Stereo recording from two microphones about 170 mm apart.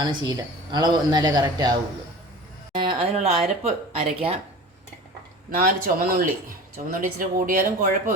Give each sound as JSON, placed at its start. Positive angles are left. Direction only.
{"t": 0.0, "sound": "speech", "side_deg": -25}
{"t": 5.5, "sound": "speech", "side_deg": -55}